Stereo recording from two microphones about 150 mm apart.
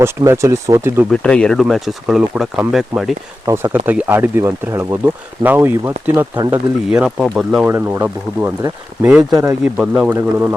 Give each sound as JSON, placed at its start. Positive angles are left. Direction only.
{"t": 0.0, "sound": "speech", "side_deg": -20}
{"t": 1.1, "sound": "speech", "side_deg": 5}
{"t": 3.4, "sound": "speech", "side_deg": -15}
{"t": 7.7, "sound": "speech", "side_deg": -15}
{"t": 9.7, "sound": "speech", "side_deg": -5}